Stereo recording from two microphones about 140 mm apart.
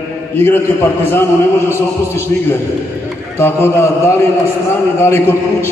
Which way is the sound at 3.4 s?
20° left (ahead or behind).